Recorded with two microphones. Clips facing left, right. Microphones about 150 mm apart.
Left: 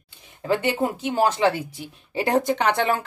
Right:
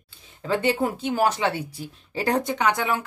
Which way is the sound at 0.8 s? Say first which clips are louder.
Left 1 dB; 25° left (ahead or behind).